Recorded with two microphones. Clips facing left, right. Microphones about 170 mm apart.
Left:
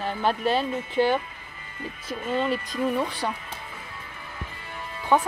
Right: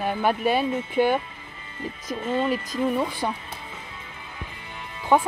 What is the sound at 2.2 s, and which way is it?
Speech, 25° right (ahead or behind).